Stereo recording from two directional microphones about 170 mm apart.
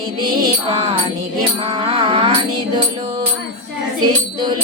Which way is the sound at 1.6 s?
30° right (ahead or behind).